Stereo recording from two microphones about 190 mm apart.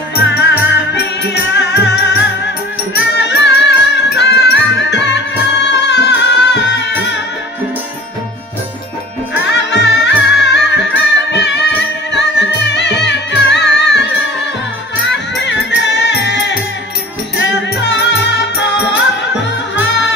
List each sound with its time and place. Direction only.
0.1 s music: 65° left (ahead or behind)
3.2 s music: 65° left (ahead or behind)
9.5 s music: 65° left (ahead or behind)